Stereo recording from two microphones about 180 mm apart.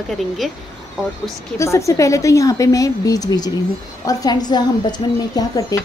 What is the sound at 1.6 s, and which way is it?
A woman's voice, 15° left (ahead or behind).